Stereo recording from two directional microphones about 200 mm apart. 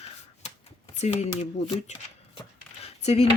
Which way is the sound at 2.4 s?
30° left (ahead or behind).